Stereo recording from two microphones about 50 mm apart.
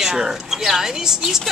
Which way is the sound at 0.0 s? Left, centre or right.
Centre.